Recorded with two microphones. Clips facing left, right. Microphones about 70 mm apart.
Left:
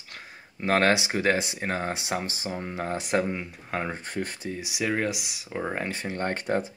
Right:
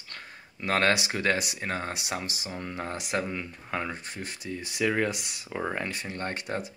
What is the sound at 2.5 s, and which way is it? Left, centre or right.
Speech, centre.